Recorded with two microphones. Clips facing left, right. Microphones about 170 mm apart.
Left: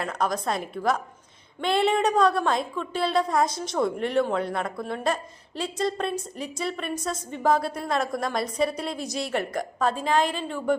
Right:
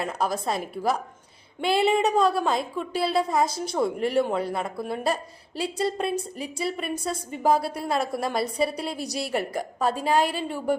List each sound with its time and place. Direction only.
0.0 s a woman's voice: 5° right (ahead or behind)
9.8 s a woman's voice: 40° right (ahead or behind)
10.2 s a woman's voice: 10° right (ahead or behind)